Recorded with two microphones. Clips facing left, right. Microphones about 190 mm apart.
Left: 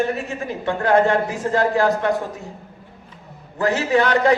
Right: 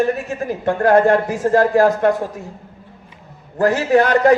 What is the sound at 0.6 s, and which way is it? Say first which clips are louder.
A man's voice: right 4 dB; 45° right (ahead or behind).